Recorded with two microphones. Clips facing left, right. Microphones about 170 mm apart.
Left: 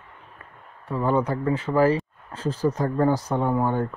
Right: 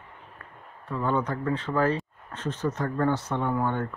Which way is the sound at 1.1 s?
10° left (ahead or behind).